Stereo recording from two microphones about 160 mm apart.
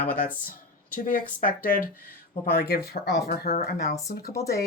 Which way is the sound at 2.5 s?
70° left (ahead or behind).